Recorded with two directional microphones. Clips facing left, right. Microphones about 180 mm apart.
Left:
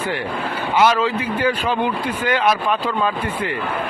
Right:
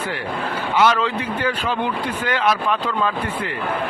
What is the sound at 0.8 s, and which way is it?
Speech, 10° left (ahead or behind).